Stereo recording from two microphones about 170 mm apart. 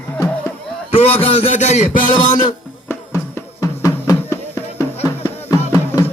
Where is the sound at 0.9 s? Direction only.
40° left (ahead or behind).